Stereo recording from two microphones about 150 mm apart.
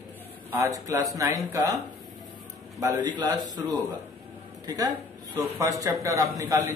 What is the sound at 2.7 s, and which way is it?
A man's voice, 25° right (ahead or behind).